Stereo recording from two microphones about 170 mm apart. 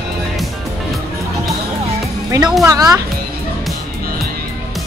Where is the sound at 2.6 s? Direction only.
20° right (ahead or behind).